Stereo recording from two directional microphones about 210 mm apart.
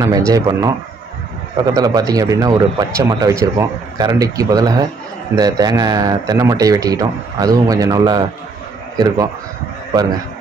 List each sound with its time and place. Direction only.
0.3 s speech: 15° right (ahead or behind)